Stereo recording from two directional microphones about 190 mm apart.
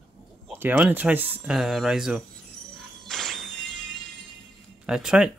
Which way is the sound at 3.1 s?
Centre (ahead or behind).